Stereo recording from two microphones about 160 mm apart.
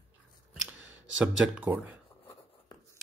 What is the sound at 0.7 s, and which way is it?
Speech, 5° right (ahead or behind).